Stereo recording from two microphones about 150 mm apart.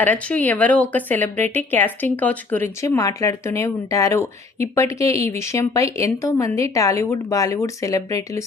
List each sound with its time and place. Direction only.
0.0 s a woman's voice: 10° left (ahead or behind)